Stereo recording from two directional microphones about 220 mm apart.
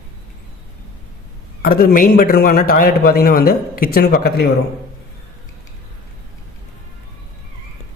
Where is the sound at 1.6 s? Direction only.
40° left (ahead or behind).